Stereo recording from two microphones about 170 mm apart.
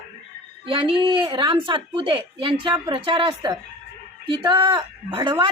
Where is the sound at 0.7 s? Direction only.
30° right (ahead or behind).